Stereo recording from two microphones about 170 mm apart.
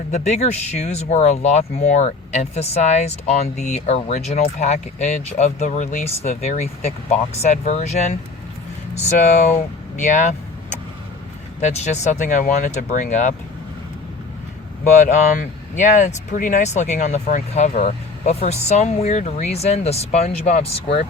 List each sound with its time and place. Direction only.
0.1 s speech: 40° left (ahead or behind)
9.1 s speech: 45° left (ahead or behind)
10.0 s vehicle: 45° left (ahead or behind)
11.6 s speech: 40° left (ahead or behind)
15.0 s speech: 50° left (ahead or behind)